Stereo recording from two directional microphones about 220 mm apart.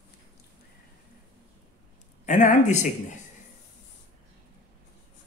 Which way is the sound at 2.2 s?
35° left (ahead or behind).